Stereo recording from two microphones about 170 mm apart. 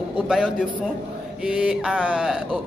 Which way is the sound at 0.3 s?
5° right (ahead or behind).